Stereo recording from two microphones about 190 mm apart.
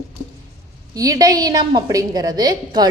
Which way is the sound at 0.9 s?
20° right (ahead or behind).